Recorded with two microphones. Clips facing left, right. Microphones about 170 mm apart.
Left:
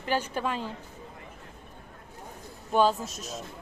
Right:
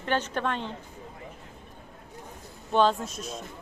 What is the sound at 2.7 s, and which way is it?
Speech, 5° left (ahead or behind).